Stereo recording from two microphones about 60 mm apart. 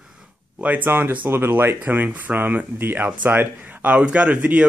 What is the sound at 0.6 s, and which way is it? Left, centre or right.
Speech, right.